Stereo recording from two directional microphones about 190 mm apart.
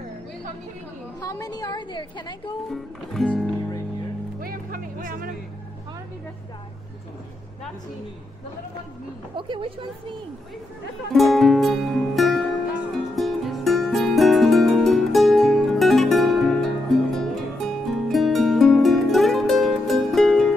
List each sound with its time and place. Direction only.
1.2 s a woman's voice: 20° left (ahead or behind)
2.7 s music: centre (ahead or behind)
4.4 s music: 50° right (ahead or behind)
9.4 s a woman's voice: 25° right (ahead or behind)
11.1 s music: centre (ahead or behind)